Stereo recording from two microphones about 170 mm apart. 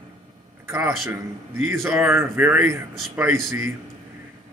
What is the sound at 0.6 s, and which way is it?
Speech, 15° right (ahead or behind).